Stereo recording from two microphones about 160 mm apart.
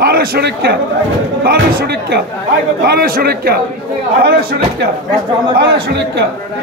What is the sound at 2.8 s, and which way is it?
A man's voice, 70° right (ahead or behind).